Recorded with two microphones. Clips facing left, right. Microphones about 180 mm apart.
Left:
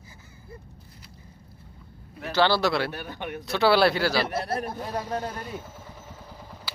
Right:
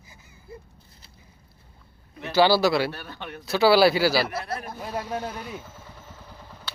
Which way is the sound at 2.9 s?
15° left (ahead or behind).